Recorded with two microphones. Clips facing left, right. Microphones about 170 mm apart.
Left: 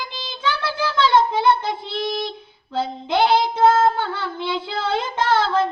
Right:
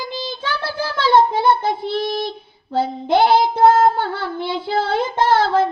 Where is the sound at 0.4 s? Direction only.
40° right (ahead or behind).